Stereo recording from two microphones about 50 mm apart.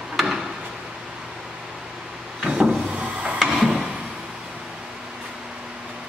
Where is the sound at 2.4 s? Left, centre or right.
Centre.